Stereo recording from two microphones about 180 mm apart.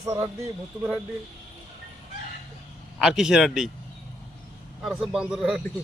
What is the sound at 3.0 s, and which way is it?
Speech, 5° right (ahead or behind).